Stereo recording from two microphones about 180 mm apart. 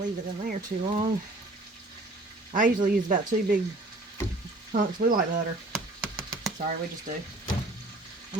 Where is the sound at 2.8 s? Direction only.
50° right (ahead or behind).